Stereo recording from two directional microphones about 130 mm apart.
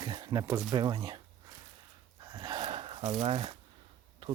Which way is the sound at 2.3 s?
35° right (ahead or behind).